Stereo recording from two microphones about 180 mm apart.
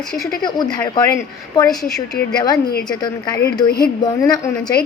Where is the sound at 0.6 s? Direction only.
20° left (ahead or behind).